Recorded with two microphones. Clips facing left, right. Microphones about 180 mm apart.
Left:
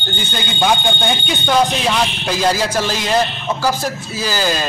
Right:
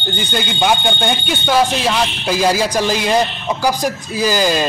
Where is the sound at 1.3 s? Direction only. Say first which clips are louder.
Even; 5° right (ahead or behind).